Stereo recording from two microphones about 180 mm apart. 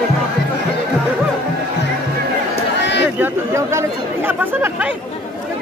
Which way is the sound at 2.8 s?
75° left (ahead or behind).